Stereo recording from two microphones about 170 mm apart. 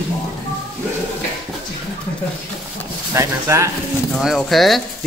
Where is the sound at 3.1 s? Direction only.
15° right (ahead or behind).